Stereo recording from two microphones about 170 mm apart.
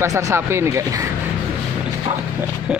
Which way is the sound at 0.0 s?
20° right (ahead or behind).